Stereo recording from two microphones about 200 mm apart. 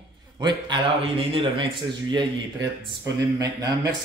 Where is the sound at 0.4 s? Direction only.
20° right (ahead or behind).